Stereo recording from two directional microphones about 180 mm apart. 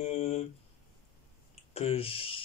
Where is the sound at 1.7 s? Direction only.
35° left (ahead or behind).